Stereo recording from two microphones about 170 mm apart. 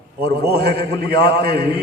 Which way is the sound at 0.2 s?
70° right (ahead or behind).